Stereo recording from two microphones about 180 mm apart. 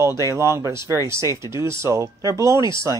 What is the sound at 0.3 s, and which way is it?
Speech, 15° right (ahead or behind).